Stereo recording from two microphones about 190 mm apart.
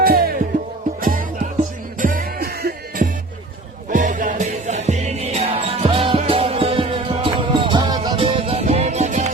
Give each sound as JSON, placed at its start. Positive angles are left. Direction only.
{"t": 0.0, "sound": "music", "side_deg": -50}